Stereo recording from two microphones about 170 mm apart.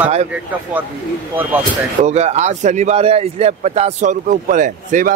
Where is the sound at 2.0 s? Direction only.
40° right (ahead or behind).